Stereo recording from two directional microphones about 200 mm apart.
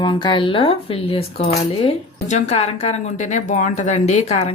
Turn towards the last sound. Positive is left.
turn(degrees=30)  # may be behind; listen again after turning